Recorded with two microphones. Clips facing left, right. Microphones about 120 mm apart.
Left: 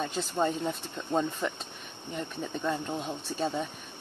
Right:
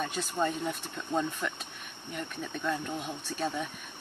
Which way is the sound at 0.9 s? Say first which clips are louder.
Left 2 dB; 25° left (ahead or behind).